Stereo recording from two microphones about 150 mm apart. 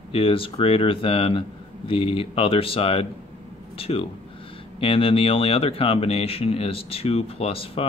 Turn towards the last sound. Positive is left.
turn(degrees=40)  # may be behind; listen again after turning